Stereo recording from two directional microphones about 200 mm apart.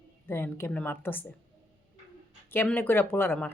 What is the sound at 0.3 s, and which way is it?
A woman's voice, 10° left (ahead or behind).